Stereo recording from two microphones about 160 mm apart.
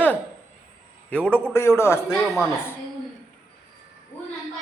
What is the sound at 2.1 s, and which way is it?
Speech, centre (ahead or behind).